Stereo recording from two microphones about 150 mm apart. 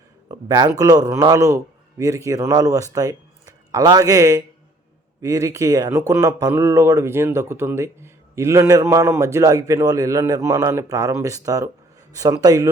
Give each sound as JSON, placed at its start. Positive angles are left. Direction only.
{"t": 0.3, "sound": "speech", "side_deg": -25}